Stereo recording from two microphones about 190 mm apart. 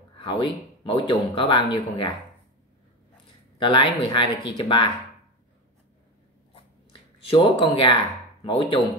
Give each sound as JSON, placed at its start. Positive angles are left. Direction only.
{"t": 0.1, "sound": "speech", "side_deg": 25}
{"t": 3.6, "sound": "speech", "side_deg": 25}
{"t": 6.5, "sound": "a sound", "side_deg": 30}
{"t": 8.5, "sound": "speech", "side_deg": 25}